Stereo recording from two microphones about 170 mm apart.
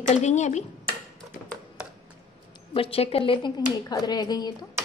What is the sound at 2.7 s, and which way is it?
Speech, 35° left (ahead or behind).